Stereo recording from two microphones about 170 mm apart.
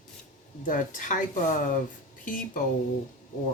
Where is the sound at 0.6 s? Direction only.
50° left (ahead or behind).